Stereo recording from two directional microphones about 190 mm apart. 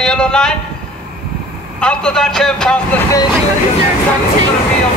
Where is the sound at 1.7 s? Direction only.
5° left (ahead or behind).